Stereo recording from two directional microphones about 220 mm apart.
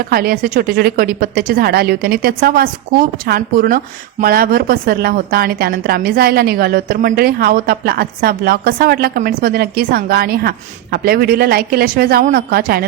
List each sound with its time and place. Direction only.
0.1 s a woman's voice: 40° right (ahead or behind)